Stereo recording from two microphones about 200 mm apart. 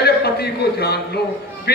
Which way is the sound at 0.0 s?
55° left (ahead or behind).